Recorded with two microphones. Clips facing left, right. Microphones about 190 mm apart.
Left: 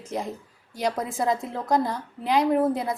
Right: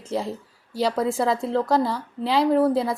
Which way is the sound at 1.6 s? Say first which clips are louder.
Right 2 dB; 20° left (ahead or behind).